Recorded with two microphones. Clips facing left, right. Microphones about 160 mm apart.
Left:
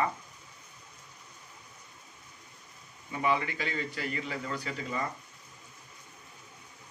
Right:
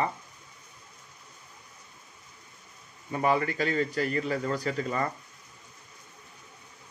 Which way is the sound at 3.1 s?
45° right (ahead or behind).